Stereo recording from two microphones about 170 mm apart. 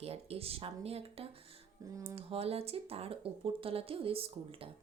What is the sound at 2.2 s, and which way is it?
A woman's voice, 35° right (ahead or behind).